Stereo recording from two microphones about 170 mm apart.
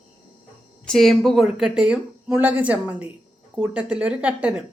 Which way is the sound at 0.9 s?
Centre (ahead or behind).